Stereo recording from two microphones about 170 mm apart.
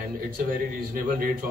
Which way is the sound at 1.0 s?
55° right (ahead or behind).